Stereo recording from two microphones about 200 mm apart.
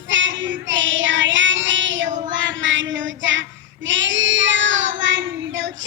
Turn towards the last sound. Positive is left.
turn(degrees=-65)  # may be behind; listen again after turning